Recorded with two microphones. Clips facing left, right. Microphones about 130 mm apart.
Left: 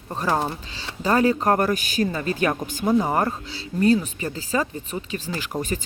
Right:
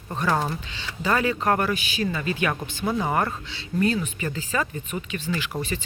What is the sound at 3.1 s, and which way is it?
Speech, 30° left (ahead or behind).